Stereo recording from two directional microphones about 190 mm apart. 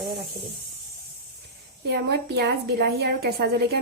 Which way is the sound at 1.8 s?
60° right (ahead or behind).